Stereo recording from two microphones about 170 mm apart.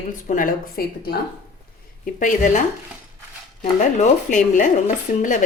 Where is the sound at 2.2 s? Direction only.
50° left (ahead or behind).